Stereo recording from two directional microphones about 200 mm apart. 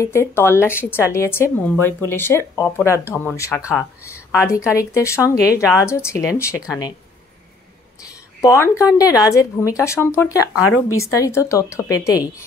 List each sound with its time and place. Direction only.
0.0 s a woman's voice: 10° left (ahead or behind)
8.4 s a woman's voice: 15° left (ahead or behind)
10.5 s speech: 90° left
11.0 s a woman's voice: 15° left (ahead or behind)